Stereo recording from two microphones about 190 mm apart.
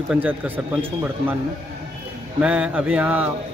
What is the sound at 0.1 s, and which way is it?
Speech, 10° right (ahead or behind).